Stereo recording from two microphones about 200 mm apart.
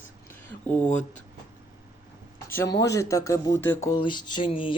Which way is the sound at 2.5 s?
10° left (ahead or behind).